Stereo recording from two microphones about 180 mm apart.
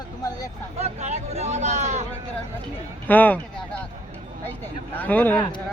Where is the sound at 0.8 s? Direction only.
35° right (ahead or behind).